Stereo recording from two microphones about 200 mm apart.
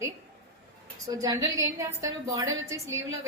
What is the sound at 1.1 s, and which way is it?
A woman's voice, 15° right (ahead or behind).